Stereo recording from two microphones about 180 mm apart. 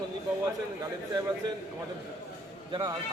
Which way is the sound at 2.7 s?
20° right (ahead or behind).